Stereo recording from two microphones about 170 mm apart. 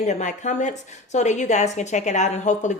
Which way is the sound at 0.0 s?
45° left (ahead or behind).